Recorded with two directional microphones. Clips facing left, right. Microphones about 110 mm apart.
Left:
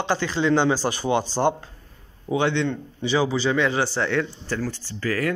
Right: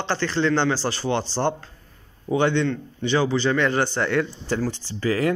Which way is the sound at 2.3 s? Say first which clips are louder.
Right 2 dB; centre (ahead or behind).